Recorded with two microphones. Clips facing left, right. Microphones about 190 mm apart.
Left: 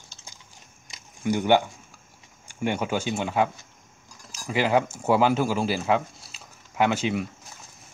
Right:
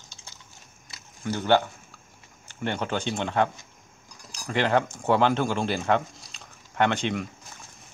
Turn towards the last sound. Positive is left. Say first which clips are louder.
# left 1 dB
turn(degrees=5)  # may be behind; listen again after turning